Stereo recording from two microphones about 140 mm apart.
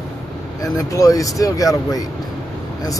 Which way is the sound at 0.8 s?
25° left (ahead or behind).